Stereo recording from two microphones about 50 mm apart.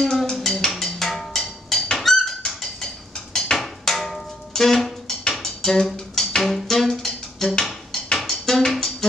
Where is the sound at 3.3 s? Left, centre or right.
Centre.